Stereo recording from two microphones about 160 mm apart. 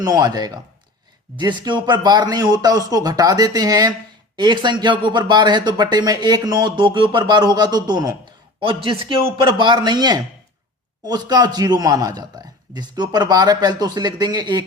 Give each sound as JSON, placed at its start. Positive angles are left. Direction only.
{"t": 0.0, "sound": "speech", "side_deg": -25}